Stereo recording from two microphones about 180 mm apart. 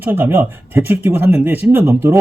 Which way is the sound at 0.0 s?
10° right (ahead or behind).